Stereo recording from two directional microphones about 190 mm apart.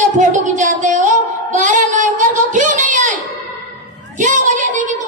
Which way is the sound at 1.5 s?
40° right (ahead or behind).